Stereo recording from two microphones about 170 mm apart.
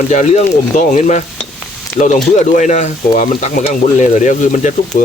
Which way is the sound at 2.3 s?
45° left (ahead or behind).